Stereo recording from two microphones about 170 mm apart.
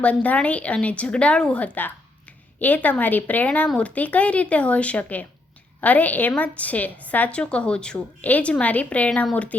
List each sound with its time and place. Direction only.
0.0 s speech: 10° left (ahead or behind)